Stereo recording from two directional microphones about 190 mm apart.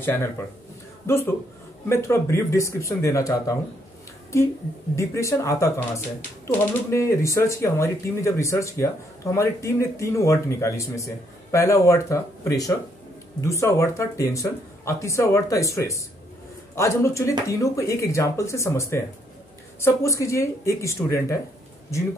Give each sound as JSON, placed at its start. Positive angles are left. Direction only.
{"t": 0.0, "sound": "speech", "side_deg": 10}
{"t": 4.9, "sound": "speech", "side_deg": 15}